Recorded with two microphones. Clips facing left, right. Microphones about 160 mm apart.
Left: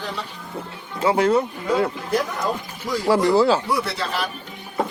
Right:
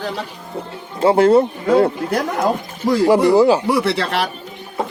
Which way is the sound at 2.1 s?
70° right (ahead or behind).